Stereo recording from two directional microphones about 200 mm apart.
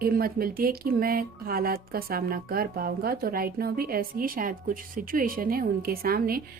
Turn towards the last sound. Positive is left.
turn(degrees=-45)  # may be behind; listen again after turning